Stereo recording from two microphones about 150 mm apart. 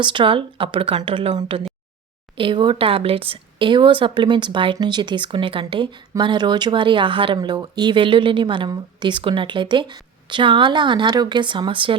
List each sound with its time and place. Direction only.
0.0 s speech: 35° right (ahead or behind)